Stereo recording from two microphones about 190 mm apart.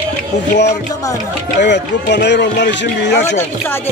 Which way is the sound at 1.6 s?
65° left (ahead or behind).